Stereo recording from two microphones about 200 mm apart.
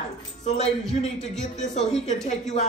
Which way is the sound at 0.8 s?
Centre (ahead or behind).